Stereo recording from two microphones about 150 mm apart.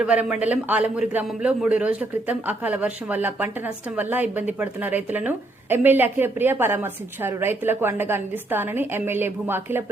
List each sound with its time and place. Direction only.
0.0 s a woman's voice: 5° right (ahead or behind)